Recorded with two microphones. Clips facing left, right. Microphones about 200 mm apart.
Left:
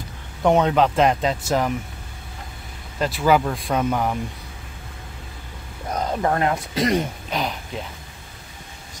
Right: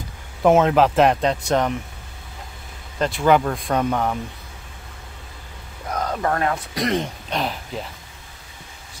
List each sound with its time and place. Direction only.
0.4 s speech: 5° right (ahead or behind)
3.0 s speech: 5° left (ahead or behind)
5.9 s speech: 15° left (ahead or behind)
7.2 s speech: centre (ahead or behind)